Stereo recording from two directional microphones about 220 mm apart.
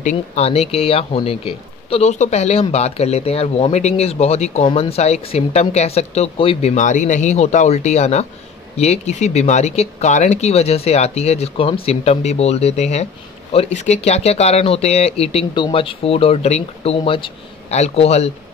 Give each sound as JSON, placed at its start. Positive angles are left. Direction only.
{"t": 0.0, "sound": "speech", "side_deg": 30}